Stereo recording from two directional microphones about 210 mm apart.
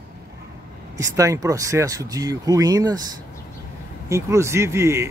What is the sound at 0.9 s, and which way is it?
Speech, 15° right (ahead or behind).